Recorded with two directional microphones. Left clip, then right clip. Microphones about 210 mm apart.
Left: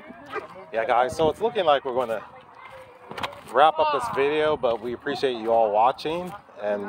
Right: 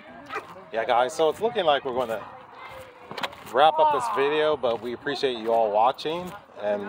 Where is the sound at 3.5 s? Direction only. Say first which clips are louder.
Even; 15° left (ahead or behind).